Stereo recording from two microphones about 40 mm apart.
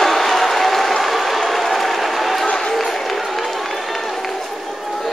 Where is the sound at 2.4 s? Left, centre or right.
Centre.